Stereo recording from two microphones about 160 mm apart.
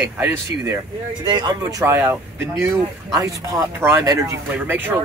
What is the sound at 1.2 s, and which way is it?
Speech, 25° right (ahead or behind).